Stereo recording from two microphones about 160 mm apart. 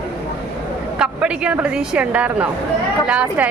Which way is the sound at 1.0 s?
5° right (ahead or behind).